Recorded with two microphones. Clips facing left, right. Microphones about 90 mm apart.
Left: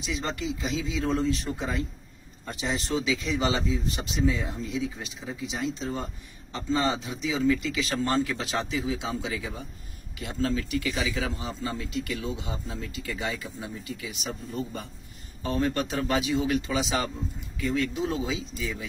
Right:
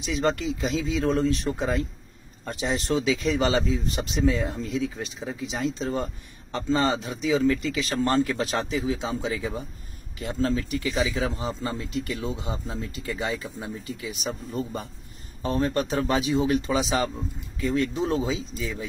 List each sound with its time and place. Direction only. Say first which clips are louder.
0.2 s a man's voice: right 10 dB; 45° right (ahead or behind)
3.1 s a man's voice: right 4 dB; 50° right (ahead or behind)